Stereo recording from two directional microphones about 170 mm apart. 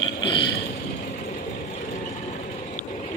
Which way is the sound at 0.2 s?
30° left (ahead or behind).